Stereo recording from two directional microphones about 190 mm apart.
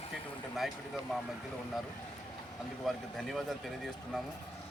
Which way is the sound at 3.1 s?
Centre (ahead or behind).